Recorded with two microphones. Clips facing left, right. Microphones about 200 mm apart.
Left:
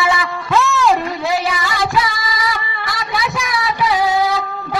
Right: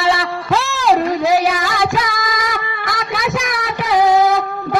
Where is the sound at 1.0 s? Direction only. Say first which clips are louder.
Right 5 dB; 40° right (ahead or behind).